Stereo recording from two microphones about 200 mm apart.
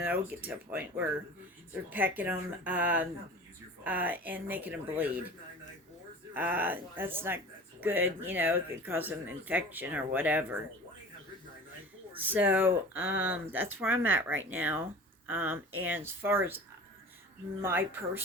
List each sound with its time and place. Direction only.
0.0 s speech: 10° right (ahead or behind)
6.3 s speech: 10° right (ahead or behind)
12.1 s speech: 10° right (ahead or behind)
13.5 s speech: 80° right
13.7 s speech: 10° right (ahead or behind)
17.6 s speech: 10° right (ahead or behind)